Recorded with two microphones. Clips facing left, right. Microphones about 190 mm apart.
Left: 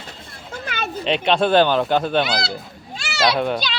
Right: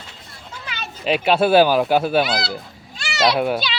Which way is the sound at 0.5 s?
50° left (ahead or behind).